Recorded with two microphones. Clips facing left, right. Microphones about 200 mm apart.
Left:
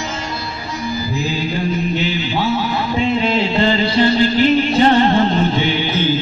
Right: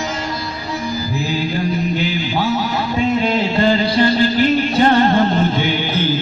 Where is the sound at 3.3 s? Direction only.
45° right (ahead or behind).